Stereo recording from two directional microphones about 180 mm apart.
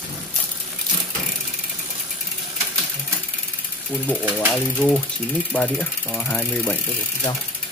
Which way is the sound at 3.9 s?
10° left (ahead or behind).